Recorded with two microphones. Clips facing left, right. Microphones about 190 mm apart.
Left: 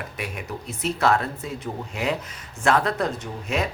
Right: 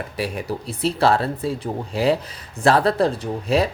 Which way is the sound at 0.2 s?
35° right (ahead or behind).